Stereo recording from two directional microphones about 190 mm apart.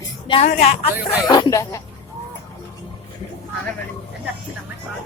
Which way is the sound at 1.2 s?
20° left (ahead or behind).